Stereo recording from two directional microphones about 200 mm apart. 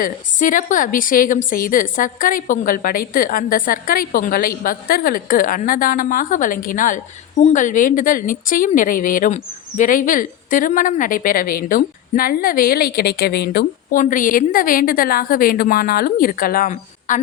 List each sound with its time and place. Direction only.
0.0 s speech: 40° left (ahead or behind)